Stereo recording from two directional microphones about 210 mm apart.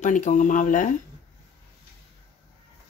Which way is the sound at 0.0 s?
35° left (ahead or behind).